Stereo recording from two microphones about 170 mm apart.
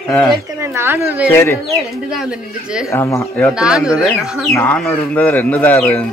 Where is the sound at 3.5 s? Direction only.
5° right (ahead or behind).